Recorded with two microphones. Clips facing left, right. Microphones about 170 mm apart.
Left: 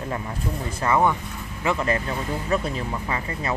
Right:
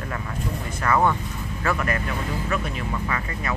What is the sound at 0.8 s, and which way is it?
Speech, 20° left (ahead or behind).